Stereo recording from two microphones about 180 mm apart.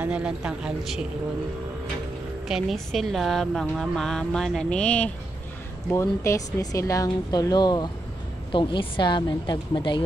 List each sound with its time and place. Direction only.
0.0 s a woman's voice: 5° right (ahead or behind)
2.4 s a woman's voice: centre (ahead or behind); by 10.0 s 25° left (ahead or behind)